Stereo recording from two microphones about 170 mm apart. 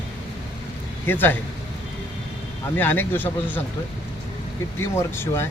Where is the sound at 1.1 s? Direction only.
10° left (ahead or behind).